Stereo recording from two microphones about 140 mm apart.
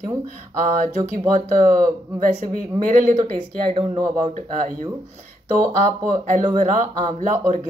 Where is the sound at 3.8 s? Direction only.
30° right (ahead or behind).